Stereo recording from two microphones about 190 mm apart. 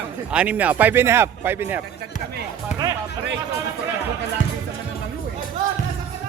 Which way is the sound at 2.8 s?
20° right (ahead or behind).